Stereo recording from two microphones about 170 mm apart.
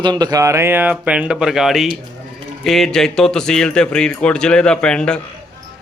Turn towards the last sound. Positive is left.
turn(degrees=5)  # may be behind; listen again after turning